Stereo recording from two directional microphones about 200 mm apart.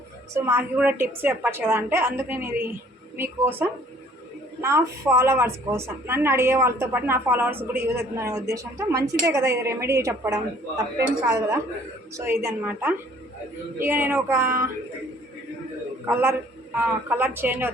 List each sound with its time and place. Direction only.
0.3 s a woman's voice: 10° right (ahead or behind)
16.0 s a woman's voice: 10° right (ahead or behind)